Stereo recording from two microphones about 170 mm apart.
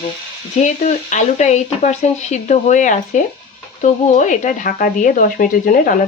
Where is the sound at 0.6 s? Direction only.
45° left (ahead or behind).